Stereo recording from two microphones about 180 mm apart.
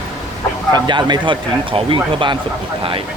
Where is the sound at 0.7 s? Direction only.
25° right (ahead or behind).